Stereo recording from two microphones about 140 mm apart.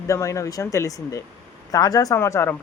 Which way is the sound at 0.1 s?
20° left (ahead or behind).